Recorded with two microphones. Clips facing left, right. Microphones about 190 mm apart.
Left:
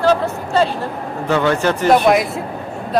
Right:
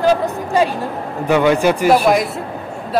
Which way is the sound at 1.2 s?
15° right (ahead or behind).